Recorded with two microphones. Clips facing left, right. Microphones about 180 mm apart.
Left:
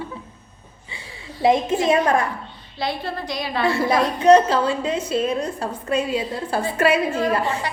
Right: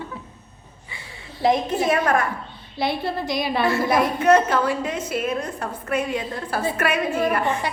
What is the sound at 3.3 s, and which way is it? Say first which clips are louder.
Speech: right 2 dB; 20° right (ahead or behind).